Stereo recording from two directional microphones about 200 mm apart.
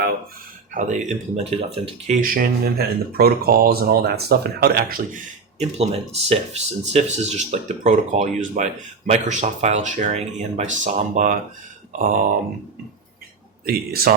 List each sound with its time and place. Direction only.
0.7 s speech: 40° right (ahead or behind)
2.2 s speech: 45° right (ahead or behind)
13.7 s speech: 50° right (ahead or behind)